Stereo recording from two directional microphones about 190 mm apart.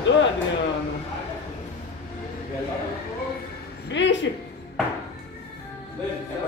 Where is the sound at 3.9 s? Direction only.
70° left (ahead or behind).